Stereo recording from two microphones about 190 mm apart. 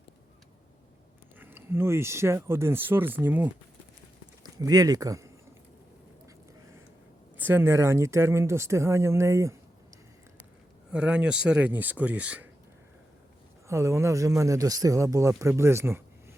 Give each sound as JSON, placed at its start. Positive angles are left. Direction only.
{"t": 1.4, "sound": "speech", "side_deg": -10}
{"t": 4.4, "sound": "speech", "side_deg": -20}
{"t": 7.3, "sound": "speech", "side_deg": -10}
{"t": 10.9, "sound": "speech", "side_deg": -5}
{"t": 13.7, "sound": "speech", "side_deg": -15}